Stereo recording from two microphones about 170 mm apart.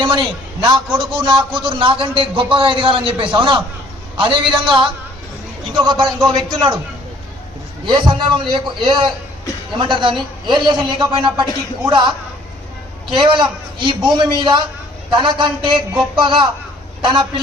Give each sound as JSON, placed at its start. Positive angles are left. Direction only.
{"t": 0.0, "sound": "a man's voice", "side_deg": -30}
{"t": 7.9, "sound": "a man's voice", "side_deg": -30}